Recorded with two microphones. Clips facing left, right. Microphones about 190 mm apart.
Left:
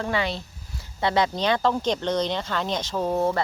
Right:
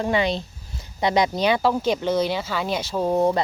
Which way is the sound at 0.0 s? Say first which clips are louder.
Right 4 dB; 20° right (ahead or behind).